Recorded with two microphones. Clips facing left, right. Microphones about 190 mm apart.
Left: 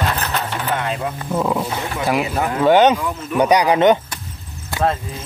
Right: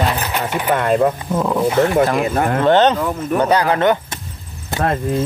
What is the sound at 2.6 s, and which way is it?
Speech, 10° left (ahead or behind).